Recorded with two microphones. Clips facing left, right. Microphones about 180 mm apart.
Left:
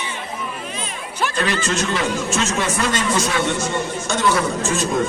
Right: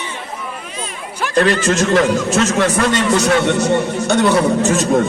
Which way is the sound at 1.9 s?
65° right (ahead or behind).